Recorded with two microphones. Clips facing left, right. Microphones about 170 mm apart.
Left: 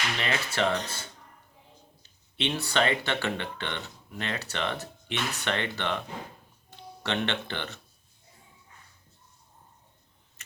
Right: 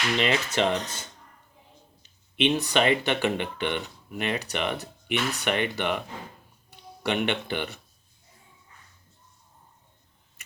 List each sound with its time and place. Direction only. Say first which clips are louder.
0.2 s speech: right 3 dB; 20° right (ahead or behind)
2.0 s speech: right 7 dB; 15° right (ahead or behind)